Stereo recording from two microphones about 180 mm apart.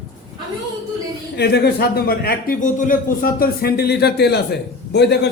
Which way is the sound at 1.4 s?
65° left (ahead or behind).